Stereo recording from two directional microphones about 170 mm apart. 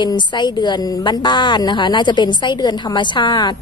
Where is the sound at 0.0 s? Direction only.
25° left (ahead or behind).